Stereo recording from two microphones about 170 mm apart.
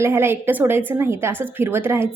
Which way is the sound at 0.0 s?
15° right (ahead or behind).